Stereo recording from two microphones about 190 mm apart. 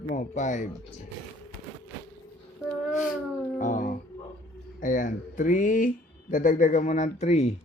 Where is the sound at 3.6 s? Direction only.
40° left (ahead or behind).